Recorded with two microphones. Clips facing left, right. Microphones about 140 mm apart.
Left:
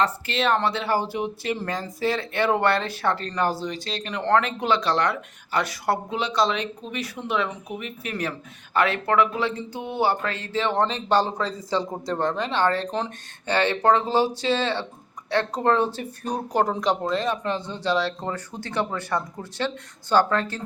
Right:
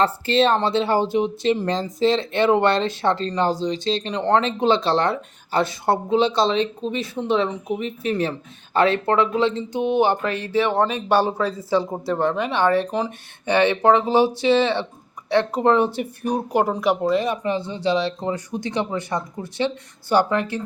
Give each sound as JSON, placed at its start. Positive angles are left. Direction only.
{"t": 0.0, "sound": "speech", "side_deg": -30}